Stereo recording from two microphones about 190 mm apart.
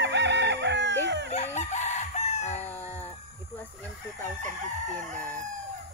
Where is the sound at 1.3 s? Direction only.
35° left (ahead or behind).